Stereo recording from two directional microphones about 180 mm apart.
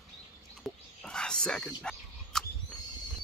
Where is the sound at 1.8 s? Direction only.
5° left (ahead or behind).